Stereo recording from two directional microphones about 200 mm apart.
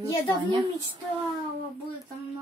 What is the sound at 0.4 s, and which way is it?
Speech, 25° right (ahead or behind).